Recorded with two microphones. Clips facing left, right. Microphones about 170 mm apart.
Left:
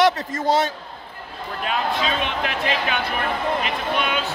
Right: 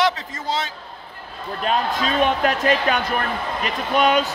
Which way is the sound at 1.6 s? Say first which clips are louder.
Right 2 dB; 40° right (ahead or behind).